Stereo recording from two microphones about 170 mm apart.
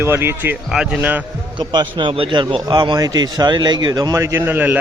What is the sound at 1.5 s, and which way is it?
A man's voice, 25° right (ahead or behind).